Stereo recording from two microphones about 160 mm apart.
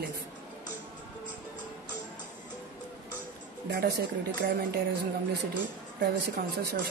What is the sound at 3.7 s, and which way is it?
Speech, 80° right.